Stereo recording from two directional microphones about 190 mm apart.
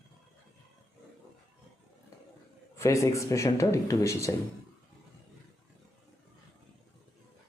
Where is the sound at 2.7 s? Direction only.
15° left (ahead or behind).